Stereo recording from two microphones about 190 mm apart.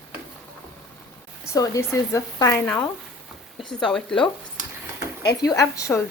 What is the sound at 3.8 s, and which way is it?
Speech, 5° left (ahead or behind).